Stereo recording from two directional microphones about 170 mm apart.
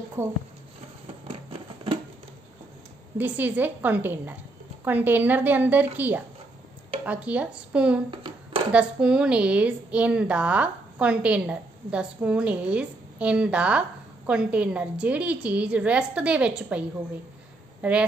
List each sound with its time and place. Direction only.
0.2 s a woman's voice: 15° right (ahead or behind)
1.2 s a sound: 30° right (ahead or behind)
3.2 s a woman's voice: 10° right (ahead or behind)
8.1 s hands: 30° right (ahead or behind)
8.7 s a woman's voice: 5° right (ahead or behind)
17.8 s a woman's voice: 10° right (ahead or behind)